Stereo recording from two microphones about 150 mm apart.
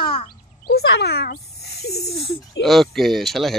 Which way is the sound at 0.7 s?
90° left.